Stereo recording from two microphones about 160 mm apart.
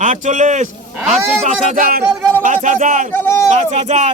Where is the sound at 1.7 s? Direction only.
65° right (ahead or behind).